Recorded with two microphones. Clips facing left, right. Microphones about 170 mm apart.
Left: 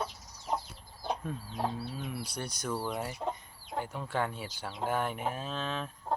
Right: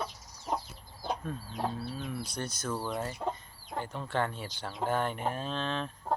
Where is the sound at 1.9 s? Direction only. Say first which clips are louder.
Right 1 dB; 10° left (ahead or behind).